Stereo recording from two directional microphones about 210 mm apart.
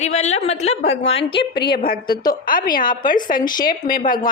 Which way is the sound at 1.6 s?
50° left (ahead or behind).